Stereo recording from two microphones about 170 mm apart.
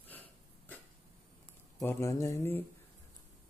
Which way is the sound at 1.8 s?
15° left (ahead or behind).